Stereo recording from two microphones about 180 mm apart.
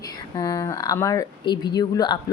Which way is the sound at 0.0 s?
20° left (ahead or behind).